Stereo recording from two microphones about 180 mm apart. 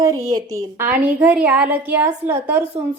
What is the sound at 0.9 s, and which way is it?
Speech, 10° right (ahead or behind).